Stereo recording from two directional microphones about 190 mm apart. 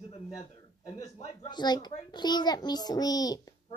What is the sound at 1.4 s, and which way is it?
A child's voice, 20° left (ahead or behind).